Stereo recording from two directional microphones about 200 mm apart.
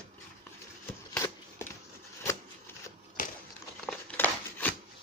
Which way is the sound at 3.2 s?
45° left (ahead or behind).